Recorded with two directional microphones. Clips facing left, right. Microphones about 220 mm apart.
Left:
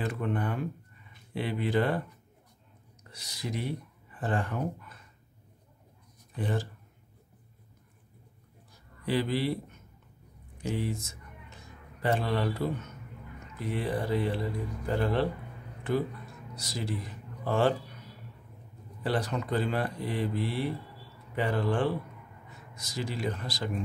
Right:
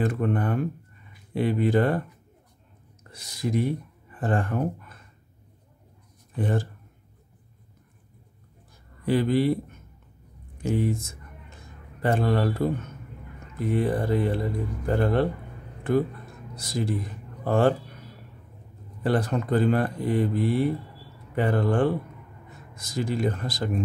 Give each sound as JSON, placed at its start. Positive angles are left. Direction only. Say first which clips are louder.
{"t": 0.0, "sound": "speech", "louder": "right 6 dB", "side_deg": -50}
{"t": 6.3, "sound": "speech", "louder": "right 5 dB", "side_deg": -50}
{"t": 9.0, "sound": "speech", "louder": "right 7 dB", "side_deg": -50}
{"t": 19.0, "sound": "speech", "louder": "right 6 dB", "side_deg": -50}